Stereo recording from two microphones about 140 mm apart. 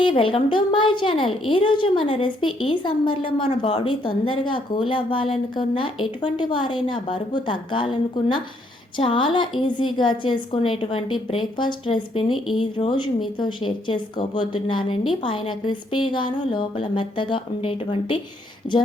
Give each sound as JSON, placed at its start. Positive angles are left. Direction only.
{"t": 0.0, "sound": "a woman's voice", "side_deg": 35}
{"t": 13.4, "sound": "a woman's voice", "side_deg": 35}
{"t": 18.6, "sound": "female singing", "side_deg": 45}